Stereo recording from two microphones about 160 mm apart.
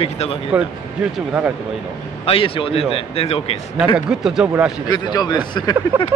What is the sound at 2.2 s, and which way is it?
A man's voice, 35° left (ahead or behind).